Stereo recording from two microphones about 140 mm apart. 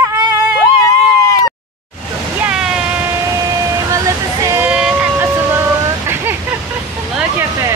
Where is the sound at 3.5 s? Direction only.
25° right (ahead or behind).